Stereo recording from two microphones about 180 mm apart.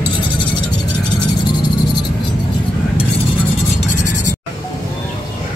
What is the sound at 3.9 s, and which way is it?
Music, 40° left (ahead or behind).